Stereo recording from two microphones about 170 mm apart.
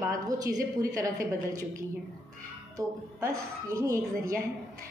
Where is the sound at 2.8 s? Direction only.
20° right (ahead or behind).